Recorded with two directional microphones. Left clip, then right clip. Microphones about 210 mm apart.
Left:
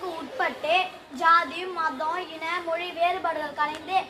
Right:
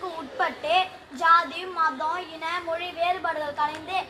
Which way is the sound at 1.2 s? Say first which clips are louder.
Right 1 dB; 15° left (ahead or behind).